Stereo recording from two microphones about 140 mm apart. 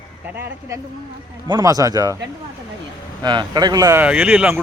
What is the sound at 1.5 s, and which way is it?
Speech, 25° right (ahead or behind).